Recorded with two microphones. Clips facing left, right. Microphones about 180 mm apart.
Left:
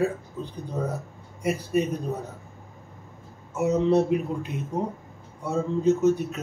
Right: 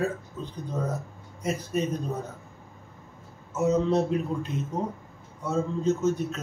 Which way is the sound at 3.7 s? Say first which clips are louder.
Left 3 dB; 15° left (ahead or behind).